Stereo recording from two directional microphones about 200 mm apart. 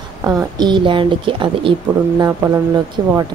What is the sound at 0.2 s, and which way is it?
A woman's voice, 15° right (ahead or behind).